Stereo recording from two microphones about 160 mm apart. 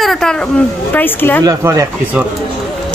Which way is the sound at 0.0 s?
Centre (ahead or behind).